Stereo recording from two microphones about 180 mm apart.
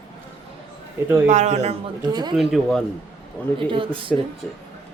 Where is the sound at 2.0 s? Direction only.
25° right (ahead or behind).